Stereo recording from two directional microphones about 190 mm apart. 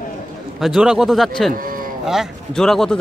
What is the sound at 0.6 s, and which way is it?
Speech, centre (ahead or behind).